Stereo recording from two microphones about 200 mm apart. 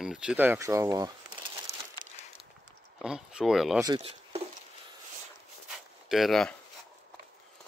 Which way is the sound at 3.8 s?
20° right (ahead or behind).